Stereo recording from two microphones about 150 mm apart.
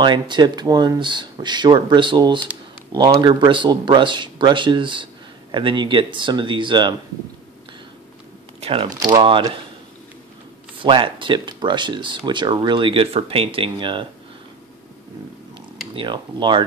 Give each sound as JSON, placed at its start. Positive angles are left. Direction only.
{"t": 0.0, "sound": "speech", "side_deg": -30}
{"t": 8.5, "sound": "crumpling", "side_deg": -40}
{"t": 8.8, "sound": "speech", "side_deg": -30}
{"t": 10.8, "sound": "speech", "side_deg": -35}
{"t": 15.9, "sound": "speech", "side_deg": -35}